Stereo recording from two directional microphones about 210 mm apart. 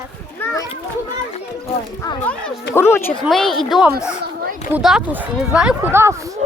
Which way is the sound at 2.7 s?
10° left (ahead or behind).